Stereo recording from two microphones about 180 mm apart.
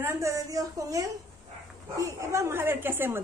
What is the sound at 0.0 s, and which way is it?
A woman's voice, 15° right (ahead or behind).